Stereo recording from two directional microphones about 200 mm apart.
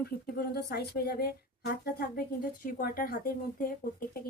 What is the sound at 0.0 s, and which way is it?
A woman's voice, 50° left (ahead or behind).